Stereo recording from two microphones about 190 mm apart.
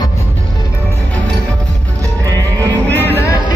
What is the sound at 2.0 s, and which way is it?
Music, 20° right (ahead or behind).